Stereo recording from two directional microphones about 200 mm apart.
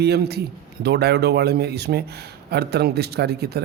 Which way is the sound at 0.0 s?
55° right (ahead or behind).